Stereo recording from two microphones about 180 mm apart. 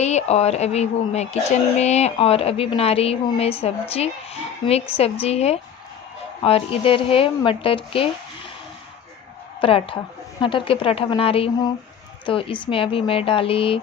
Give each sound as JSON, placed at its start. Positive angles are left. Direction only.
{"t": 0.0, "sound": "speech", "side_deg": 35}
{"t": 9.6, "sound": "a woman's voice", "side_deg": 30}